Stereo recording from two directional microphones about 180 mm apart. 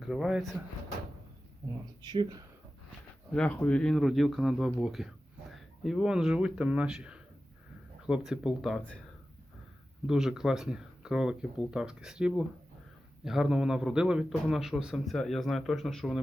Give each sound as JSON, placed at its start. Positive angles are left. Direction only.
{"t": 0.0, "sound": "speech", "side_deg": 0}
{"t": 2.0, "sound": "speech", "side_deg": -25}
{"t": 3.3, "sound": "speech", "side_deg": 5}
{"t": 10.1, "sound": "speech", "side_deg": 0}